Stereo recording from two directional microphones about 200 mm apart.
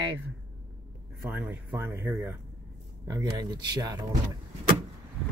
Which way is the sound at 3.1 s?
20° right (ahead or behind).